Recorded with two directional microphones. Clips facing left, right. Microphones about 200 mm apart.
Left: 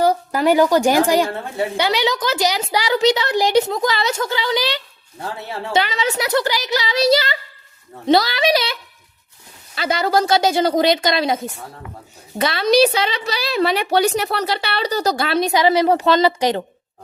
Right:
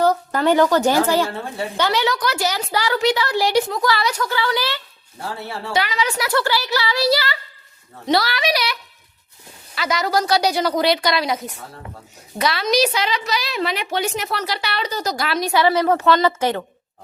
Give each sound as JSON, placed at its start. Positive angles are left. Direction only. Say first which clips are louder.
{"t": 0.0, "sound": "a woman's voice", "louder": "left 1 dB", "side_deg": 10}